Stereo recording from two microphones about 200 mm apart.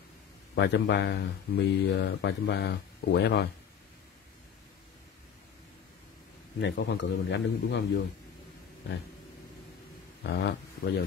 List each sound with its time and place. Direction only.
0.6 s speech: 60° left (ahead or behind)
6.6 s speech: 60° left (ahead or behind)
10.2 s speech: 55° left (ahead or behind)